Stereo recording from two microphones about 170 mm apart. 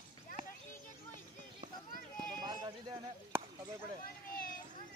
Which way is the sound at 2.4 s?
25° right (ahead or behind).